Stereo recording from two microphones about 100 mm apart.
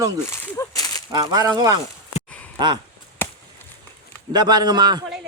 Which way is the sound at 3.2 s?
20° left (ahead or behind).